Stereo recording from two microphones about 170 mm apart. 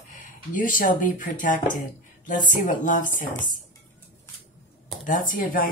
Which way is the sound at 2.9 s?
50° left (ahead or behind).